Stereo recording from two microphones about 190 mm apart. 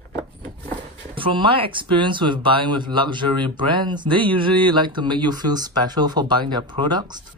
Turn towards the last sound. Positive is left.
turn(degrees=-25)  # may be behind; listen again after turning